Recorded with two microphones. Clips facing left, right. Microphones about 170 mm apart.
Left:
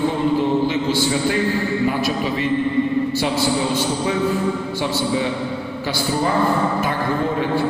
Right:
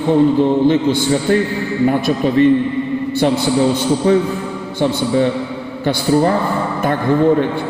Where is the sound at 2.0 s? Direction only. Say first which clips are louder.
Right 8 dB; 50° right (ahead or behind).